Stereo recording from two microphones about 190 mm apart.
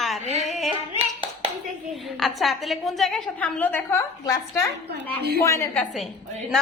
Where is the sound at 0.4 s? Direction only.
Centre (ahead or behind).